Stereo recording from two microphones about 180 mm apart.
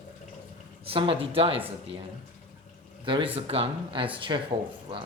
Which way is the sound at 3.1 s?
30° right (ahead or behind).